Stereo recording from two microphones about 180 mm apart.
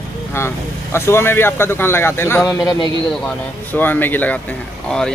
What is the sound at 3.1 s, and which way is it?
Speech, 5° left (ahead or behind).